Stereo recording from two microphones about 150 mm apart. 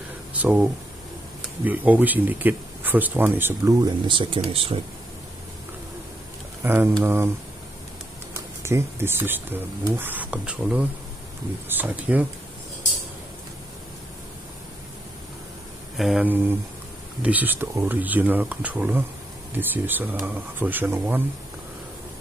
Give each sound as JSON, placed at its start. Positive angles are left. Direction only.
{"t": 0.3, "sound": "a sound", "side_deg": -10}
{"t": 1.6, "sound": "speech", "side_deg": -10}
{"t": 3.8, "sound": "speech", "side_deg": -30}
{"t": 6.6, "sound": "speech", "side_deg": -15}
{"t": 8.6, "sound": "speech", "side_deg": -15}
{"t": 16.0, "sound": "speech", "side_deg": -5}